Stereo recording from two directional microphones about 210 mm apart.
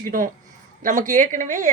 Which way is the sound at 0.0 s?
40° right (ahead or behind).